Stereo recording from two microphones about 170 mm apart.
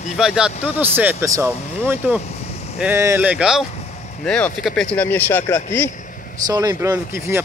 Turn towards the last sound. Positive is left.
turn(degrees=-15)  # may be behind; listen again after turning